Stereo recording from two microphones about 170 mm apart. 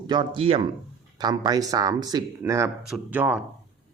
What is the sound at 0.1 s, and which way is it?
Speech, 30° right (ahead or behind).